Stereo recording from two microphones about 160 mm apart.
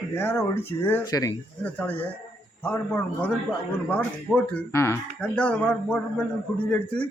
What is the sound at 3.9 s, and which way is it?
Speech, 10° left (ahead or behind).